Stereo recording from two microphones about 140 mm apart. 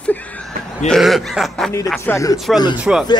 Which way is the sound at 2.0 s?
20° left (ahead or behind).